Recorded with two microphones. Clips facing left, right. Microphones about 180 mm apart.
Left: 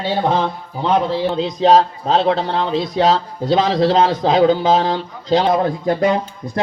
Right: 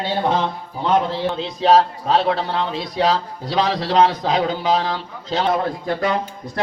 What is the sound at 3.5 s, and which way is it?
Speech, 40° left (ahead or behind).